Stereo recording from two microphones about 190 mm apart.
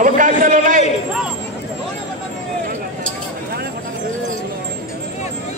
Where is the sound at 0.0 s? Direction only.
45° right (ahead or behind).